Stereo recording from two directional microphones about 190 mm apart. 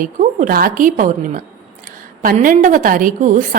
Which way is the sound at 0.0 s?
45° right (ahead or behind).